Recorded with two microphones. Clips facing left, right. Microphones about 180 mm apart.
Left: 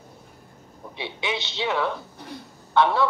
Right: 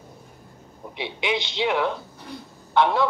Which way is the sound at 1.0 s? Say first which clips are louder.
Right 3 dB; 15° right (ahead or behind).